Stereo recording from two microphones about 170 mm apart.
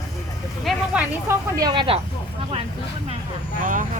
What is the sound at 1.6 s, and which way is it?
Speech, 30° right (ahead or behind).